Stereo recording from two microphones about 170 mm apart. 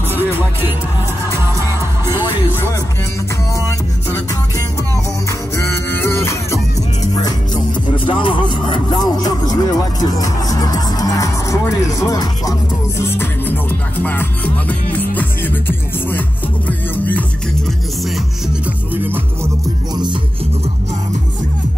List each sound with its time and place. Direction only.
5.6 s music: 15° left (ahead or behind)
8.1 s speech: 30° left (ahead or behind)
14.0 s music: 10° left (ahead or behind)
16.6 s music: 10° left (ahead or behind)